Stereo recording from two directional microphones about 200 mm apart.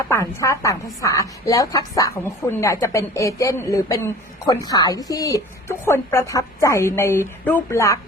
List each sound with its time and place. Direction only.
0.1 s a woman's voice: 15° left (ahead or behind)